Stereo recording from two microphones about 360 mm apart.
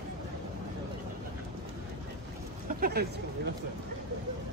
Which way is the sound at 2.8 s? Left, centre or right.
Right.